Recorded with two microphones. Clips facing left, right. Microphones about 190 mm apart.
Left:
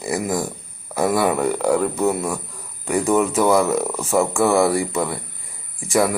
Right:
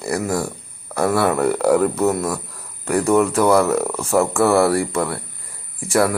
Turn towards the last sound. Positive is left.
turn(degrees=0)  # may be behind; listen again after turning